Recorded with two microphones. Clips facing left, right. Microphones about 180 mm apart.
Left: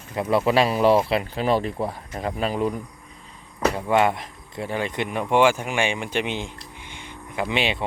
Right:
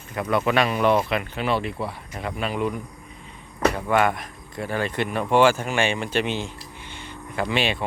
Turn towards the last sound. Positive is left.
turn(degrees=20)  # may be behind; listen again after turning